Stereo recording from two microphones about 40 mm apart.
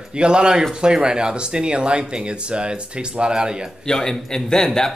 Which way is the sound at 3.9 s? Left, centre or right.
Centre.